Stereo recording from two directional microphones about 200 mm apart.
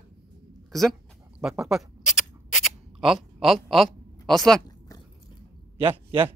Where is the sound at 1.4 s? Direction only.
Centre (ahead or behind).